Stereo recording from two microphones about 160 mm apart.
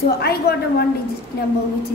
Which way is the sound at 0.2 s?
80° left.